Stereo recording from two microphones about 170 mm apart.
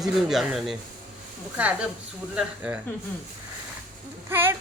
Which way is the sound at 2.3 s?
10° right (ahead or behind).